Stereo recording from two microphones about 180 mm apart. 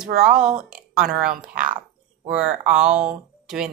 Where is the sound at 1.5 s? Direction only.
50° right (ahead or behind).